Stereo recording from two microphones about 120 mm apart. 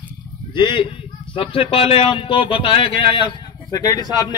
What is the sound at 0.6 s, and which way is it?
A man's voice, 45° left (ahead or behind).